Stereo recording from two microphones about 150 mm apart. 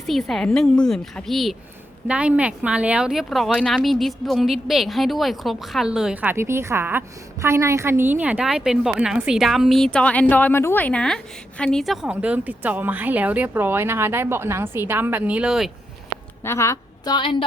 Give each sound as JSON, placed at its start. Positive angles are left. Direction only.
{"t": 0.1, "sound": "speech", "side_deg": 0}
{"t": 16.4, "sound": "a woman's voice", "side_deg": 20}